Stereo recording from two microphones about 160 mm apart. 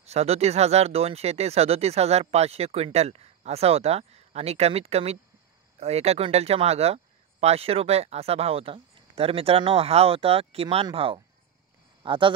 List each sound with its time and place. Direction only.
0.0 s speech: 40° right (ahead or behind)